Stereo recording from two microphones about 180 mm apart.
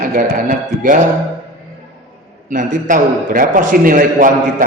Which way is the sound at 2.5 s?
45° right (ahead or behind).